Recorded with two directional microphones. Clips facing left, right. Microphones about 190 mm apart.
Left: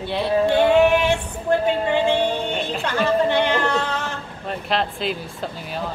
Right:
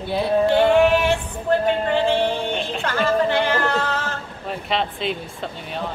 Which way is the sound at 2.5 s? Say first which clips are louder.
Left 1 dB; centre (ahead or behind).